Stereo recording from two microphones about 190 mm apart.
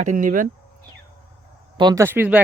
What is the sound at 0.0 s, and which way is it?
Speech, 45° right (ahead or behind).